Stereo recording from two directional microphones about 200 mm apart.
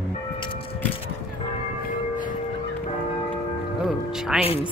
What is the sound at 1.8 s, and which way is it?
Music, 40° left (ahead or behind).